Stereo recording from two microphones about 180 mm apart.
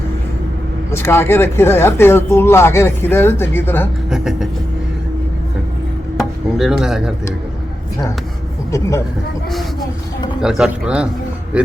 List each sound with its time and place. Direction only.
0.9 s speech: 15° left (ahead or behind)
4.1 s speech: 5° right (ahead or behind)
6.1 s speech: centre (ahead or behind)
8.7 s speech: 15° left (ahead or behind)
10.4 s speech: 5° right (ahead or behind)